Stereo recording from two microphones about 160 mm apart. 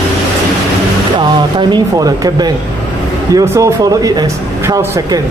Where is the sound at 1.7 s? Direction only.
25° right (ahead or behind).